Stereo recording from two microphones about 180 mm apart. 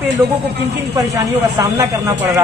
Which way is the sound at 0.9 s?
20° right (ahead or behind).